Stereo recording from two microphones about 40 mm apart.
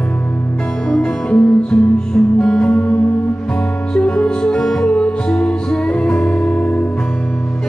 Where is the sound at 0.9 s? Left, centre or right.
Left.